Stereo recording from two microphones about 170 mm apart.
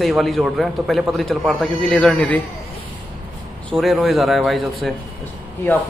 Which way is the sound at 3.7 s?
Centre (ahead or behind).